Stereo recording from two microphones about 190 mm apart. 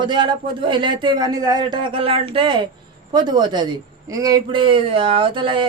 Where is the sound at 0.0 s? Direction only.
25° right (ahead or behind).